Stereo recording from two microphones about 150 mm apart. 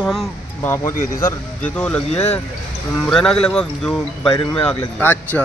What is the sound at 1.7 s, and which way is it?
Speech, 5° left (ahead or behind).